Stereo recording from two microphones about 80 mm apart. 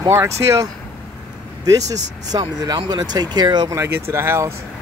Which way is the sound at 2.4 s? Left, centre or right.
Right.